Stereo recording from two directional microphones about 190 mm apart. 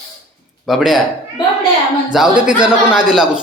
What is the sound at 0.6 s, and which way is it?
Speech, centre (ahead or behind).